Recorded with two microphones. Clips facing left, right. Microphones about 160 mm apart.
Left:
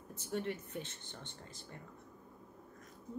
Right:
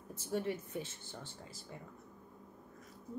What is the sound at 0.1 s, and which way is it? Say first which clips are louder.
A woman's voice: right 2 dB; 10° right (ahead or behind).